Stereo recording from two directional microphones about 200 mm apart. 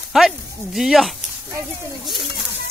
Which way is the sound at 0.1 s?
5° right (ahead or behind).